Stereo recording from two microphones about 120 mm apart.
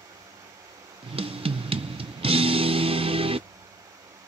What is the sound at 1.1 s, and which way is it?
Music, 50° right (ahead or behind).